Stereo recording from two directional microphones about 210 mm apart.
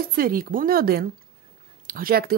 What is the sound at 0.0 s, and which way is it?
Speech, 45° right (ahead or behind).